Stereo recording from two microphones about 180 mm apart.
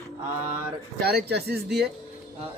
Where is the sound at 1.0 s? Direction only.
60° right (ahead or behind).